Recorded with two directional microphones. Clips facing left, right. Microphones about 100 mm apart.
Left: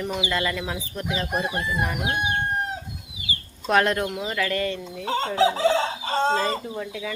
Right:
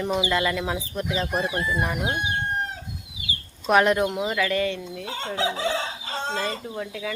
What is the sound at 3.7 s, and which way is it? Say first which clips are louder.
Speech: right 2 dB; 15° right (ahead or behind).